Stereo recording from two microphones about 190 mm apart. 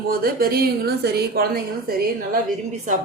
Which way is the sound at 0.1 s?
50° right (ahead or behind).